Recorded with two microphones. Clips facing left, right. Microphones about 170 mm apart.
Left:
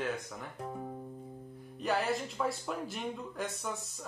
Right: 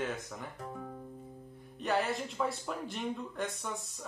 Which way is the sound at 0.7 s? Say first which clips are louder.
Left 2 dB; 25° left (ahead or behind).